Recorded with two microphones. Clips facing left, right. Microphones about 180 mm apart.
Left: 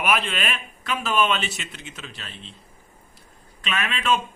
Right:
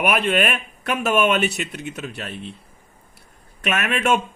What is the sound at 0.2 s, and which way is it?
Speech, 60° right (ahead or behind).